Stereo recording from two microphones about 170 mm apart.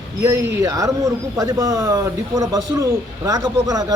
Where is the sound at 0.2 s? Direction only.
15° right (ahead or behind).